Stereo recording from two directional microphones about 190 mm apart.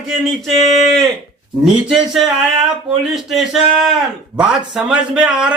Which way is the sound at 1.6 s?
Centre (ahead or behind).